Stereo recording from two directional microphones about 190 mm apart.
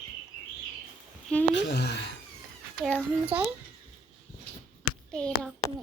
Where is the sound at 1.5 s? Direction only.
60° left (ahead or behind).